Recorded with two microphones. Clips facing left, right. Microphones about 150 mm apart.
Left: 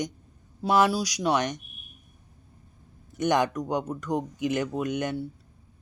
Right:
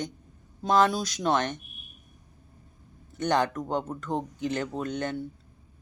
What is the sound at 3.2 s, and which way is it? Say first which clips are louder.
Speech: left 2 dB; 15° left (ahead or behind).